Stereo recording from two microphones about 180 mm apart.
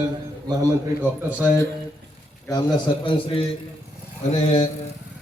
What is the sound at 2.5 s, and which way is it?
Speech, 25° left (ahead or behind).